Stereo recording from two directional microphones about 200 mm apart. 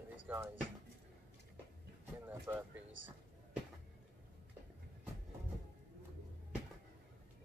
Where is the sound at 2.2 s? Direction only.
10° right (ahead or behind).